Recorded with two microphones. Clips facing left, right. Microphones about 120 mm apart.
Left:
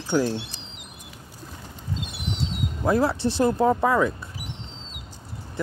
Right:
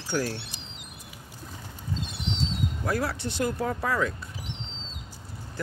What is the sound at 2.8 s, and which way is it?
Speech, 25° left (ahead or behind).